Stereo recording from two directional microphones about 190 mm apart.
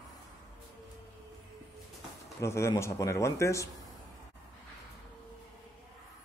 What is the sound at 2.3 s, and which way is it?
A man's voice, 15° left (ahead or behind).